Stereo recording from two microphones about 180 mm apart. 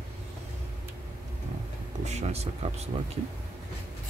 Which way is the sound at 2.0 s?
40° right (ahead or behind).